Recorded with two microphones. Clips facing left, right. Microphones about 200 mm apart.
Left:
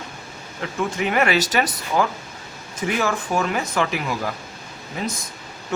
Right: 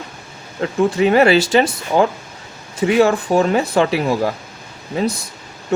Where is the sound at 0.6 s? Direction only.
35° right (ahead or behind).